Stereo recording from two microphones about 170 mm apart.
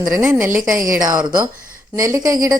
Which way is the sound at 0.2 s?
15° right (ahead or behind).